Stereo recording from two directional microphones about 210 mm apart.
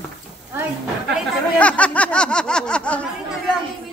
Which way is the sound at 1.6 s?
5° left (ahead or behind).